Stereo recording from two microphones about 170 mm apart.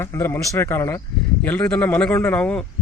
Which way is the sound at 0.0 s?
15° left (ahead or behind).